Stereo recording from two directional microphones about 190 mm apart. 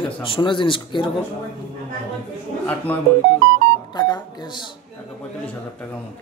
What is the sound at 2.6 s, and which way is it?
Speech, 10° left (ahead or behind).